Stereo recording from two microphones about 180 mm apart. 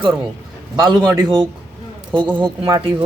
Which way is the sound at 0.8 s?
25° right (ahead or behind).